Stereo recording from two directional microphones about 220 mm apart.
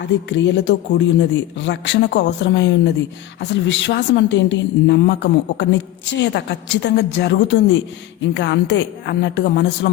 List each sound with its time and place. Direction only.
0.0 s a woman's voice: 55° left (ahead or behind)